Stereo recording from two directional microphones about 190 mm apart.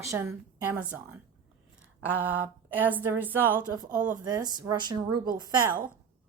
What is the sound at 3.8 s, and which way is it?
A woman's voice, 20° right (ahead or behind).